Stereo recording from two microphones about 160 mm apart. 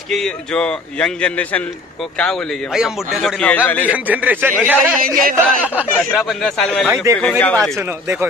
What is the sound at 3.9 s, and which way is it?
A man's voice, 10° right (ahead or behind).